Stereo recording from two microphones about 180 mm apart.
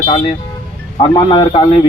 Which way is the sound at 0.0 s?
40° left (ahead or behind).